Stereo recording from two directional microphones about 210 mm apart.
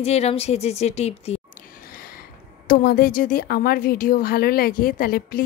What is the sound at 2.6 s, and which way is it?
A woman's voice, 45° left (ahead or behind).